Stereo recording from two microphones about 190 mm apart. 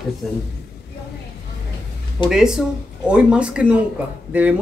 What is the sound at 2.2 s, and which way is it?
Speech, 25° left (ahead or behind).